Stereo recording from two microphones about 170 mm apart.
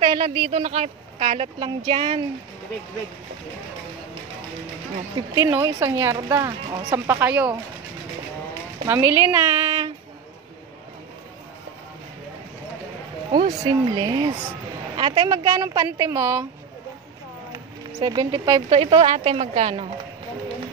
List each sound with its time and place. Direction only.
0.0 s speech: 25° right (ahead or behind)
0.6 s speech: 40° right (ahead or behind)
5.3 s a woman's voice: 20° right (ahead or behind)
7.1 s a woman's voice: 10° right (ahead or behind)
8.8 s a woman's voice: 10° right (ahead or behind)
13.3 s a woman's voice: 25° right (ahead or behind)
15.2 s a woman's voice: 20° right (ahead or behind)
18.0 s a woman's voice: 25° right (ahead or behind)
18.8 s speech: 35° right (ahead or behind)